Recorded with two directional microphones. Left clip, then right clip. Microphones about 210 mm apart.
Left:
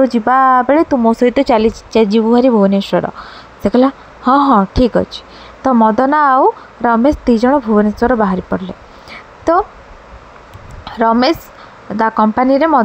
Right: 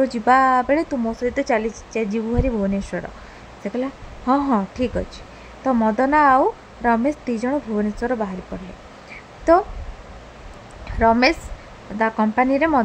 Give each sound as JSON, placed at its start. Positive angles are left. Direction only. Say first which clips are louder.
{"t": 0.0, "sound": "speech", "louder": "left 5 dB", "side_deg": 15}
{"t": 1.5, "sound": "a woman's voice", "louder": "left 10 dB", "side_deg": 30}
{"t": 9.1, "sound": "a sound", "louder": "left 2 dB", "side_deg": 15}
{"t": 10.9, "sound": "a woman's voice", "louder": "left 4 dB", "side_deg": 10}